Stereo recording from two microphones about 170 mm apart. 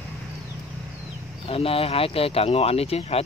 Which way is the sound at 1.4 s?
35° left (ahead or behind).